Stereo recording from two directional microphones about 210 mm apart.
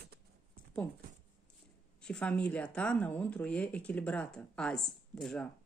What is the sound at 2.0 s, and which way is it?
Speech, 5° left (ahead or behind).